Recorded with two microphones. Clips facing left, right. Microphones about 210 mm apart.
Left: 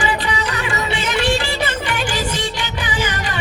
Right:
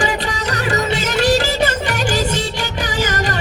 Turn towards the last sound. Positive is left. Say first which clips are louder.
# right 3 dB
turn(degrees=-40)  # may be behind; listen again after turning